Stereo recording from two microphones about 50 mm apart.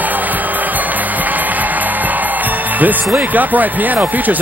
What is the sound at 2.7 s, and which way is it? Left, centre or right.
Speech, right.